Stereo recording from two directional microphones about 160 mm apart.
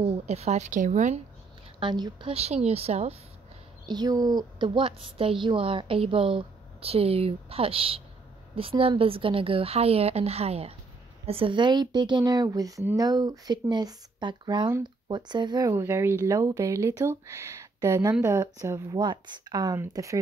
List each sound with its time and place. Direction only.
0.0 s a woman's voice: 40° right (ahead or behind)
1.8 s a woman's voice: 30° right (ahead or behind)
3.8 s a woman's voice: 25° right (ahead or behind)
15.7 s speech: 15° right (ahead or behind)